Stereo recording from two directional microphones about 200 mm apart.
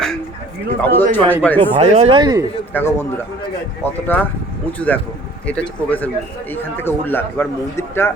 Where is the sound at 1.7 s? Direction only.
30° right (ahead or behind).